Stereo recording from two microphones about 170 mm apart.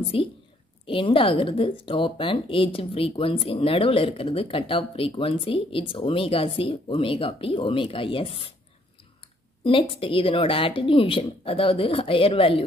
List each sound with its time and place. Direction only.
0.1 s speech: 30° left (ahead or behind)
9.6 s speech: 30° left (ahead or behind)